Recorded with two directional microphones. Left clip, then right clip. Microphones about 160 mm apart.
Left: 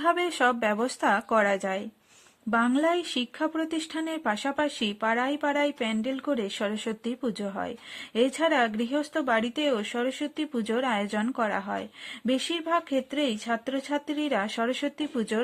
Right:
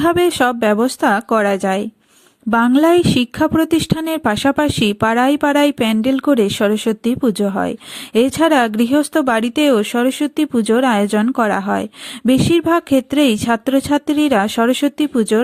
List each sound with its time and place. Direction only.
0.0 s speech: 40° right (ahead or behind)